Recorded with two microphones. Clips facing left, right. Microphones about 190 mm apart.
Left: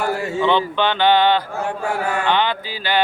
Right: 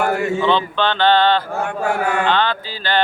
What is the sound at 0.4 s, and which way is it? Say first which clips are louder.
Speech: left 3 dB; 15° left (ahead or behind).